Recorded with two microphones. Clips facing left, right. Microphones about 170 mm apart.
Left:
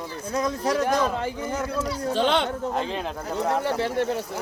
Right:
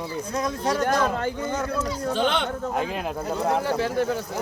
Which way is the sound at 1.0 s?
Centre (ahead or behind).